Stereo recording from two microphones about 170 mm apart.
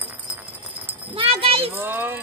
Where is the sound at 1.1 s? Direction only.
35° right (ahead or behind).